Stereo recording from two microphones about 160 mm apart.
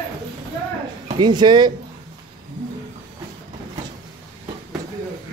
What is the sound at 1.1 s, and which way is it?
Speech, 25° right (ahead or behind).